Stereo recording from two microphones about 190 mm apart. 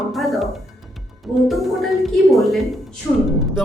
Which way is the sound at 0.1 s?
Centre (ahead or behind).